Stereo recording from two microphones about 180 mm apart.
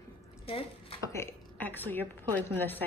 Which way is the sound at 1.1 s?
10° left (ahead or behind).